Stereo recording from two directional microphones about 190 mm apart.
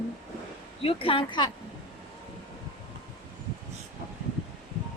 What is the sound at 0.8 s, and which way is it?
Speech, 30° left (ahead or behind).